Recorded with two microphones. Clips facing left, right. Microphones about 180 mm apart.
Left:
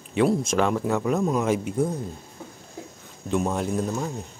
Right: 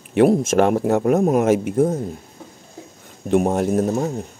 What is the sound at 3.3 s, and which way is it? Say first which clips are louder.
Speech: right 7 dB; 55° right (ahead or behind).